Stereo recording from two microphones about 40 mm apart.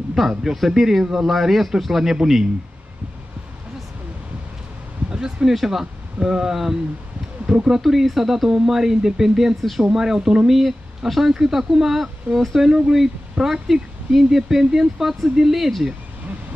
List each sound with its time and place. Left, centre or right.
0.4 s speech: centre
5.1 s speech: centre
7.8 s speech: centre
9.6 s speech: centre
9.8 s speech: centre